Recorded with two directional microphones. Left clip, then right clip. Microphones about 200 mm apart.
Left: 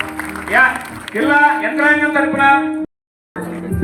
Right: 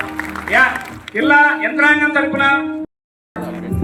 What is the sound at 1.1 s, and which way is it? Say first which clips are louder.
A man's voice: right 1 dB; 20° left (ahead or behind).